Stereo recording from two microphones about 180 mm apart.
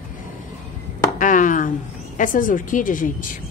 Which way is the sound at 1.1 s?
45° left (ahead or behind).